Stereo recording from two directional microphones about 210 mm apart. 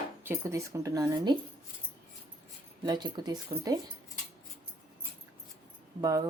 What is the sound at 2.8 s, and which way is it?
Speech, 20° right (ahead or behind).